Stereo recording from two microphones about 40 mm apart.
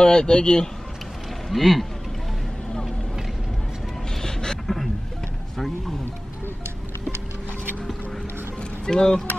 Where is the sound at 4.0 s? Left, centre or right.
Centre.